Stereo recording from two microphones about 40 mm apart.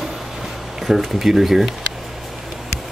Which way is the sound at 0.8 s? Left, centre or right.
Centre.